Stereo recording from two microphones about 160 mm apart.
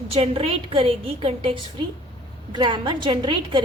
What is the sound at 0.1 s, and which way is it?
A woman's voice, 35° right (ahead or behind).